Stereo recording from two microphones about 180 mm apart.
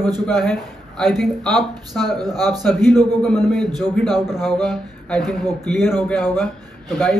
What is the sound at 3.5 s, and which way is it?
Speech, centre (ahead or behind).